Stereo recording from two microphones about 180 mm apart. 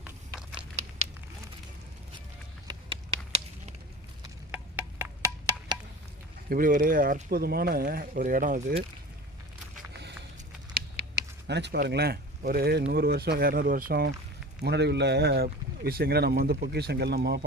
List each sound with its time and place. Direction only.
0.0 s a sound: 5° right (ahead or behind)
4.5 s wood block: 10° right (ahead or behind)
6.5 s speech: 50° right (ahead or behind)
10.8 s a sound: 65° right (ahead or behind)
12.9 s speech: 60° right (ahead or behind)
14.6 s speech: 65° right (ahead or behind)